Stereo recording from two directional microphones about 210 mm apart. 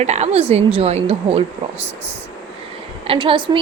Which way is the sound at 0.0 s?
30° right (ahead or behind).